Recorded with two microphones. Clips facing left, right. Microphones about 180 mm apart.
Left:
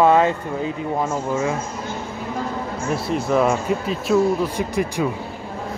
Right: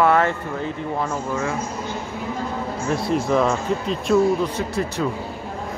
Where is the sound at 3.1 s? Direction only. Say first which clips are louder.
Left 1 dB; centre (ahead or behind).